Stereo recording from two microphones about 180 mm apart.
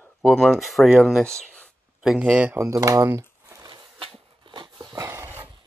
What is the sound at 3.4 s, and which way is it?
Dog, 20° right (ahead or behind).